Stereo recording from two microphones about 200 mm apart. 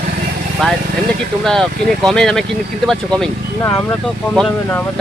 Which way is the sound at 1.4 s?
Centre (ahead or behind).